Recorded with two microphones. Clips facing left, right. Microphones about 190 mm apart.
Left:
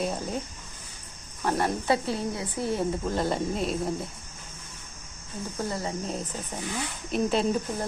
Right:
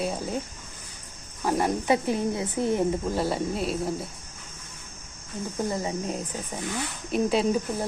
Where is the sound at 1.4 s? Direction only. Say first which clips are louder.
Right 2 dB; 10° right (ahead or behind).